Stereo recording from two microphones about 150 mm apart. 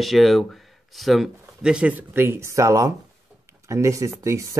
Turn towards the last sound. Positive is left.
turn(degrees=-20)  # may be behind; listen again after turning